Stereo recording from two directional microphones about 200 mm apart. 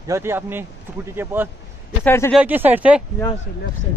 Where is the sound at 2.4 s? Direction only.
10° right (ahead or behind).